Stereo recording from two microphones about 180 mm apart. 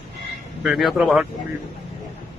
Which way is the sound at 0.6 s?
Centre (ahead or behind).